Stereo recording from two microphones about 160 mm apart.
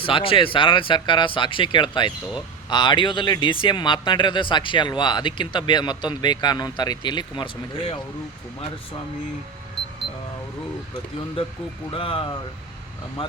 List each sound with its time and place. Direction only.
0.0 s speech: 35° left (ahead or behind)
11.9 s speech: 35° left (ahead or behind)